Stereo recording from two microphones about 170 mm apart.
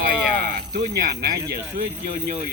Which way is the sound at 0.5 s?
55° right (ahead or behind).